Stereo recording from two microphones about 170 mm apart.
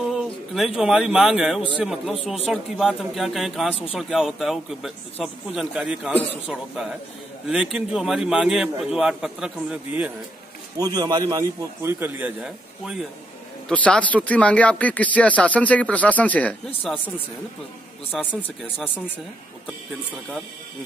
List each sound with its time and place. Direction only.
0.0 s a sound: centre (ahead or behind)
0.7 s a man's voice: 5° right (ahead or behind)
10.8 s a man's voice: 25° right (ahead or behind); by 13.0 s 5° right (ahead or behind)
13.7 s speech: 5° left (ahead or behind)
18.1 s a man's voice: centre (ahead or behind)